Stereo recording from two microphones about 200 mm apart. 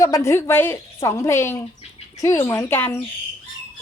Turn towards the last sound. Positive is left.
turn(degrees=10)  # may be behind; listen again after turning